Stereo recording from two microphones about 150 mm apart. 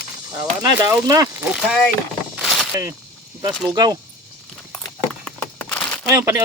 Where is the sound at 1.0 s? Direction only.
25° right (ahead or behind).